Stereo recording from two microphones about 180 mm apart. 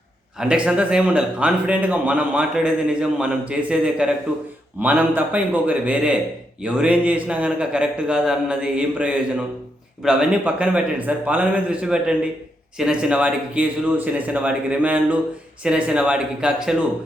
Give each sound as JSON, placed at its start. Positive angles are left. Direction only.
{"t": 0.3, "sound": "speech", "side_deg": -5}